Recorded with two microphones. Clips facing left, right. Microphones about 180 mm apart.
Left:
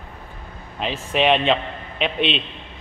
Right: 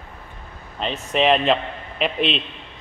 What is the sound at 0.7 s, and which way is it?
A man's voice, centre (ahead or behind).